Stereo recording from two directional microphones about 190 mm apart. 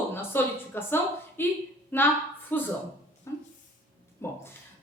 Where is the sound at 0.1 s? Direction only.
10° left (ahead or behind).